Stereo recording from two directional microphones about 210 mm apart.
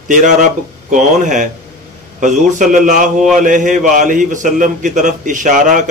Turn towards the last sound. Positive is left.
turn(degrees=-35)  # may be behind; listen again after turning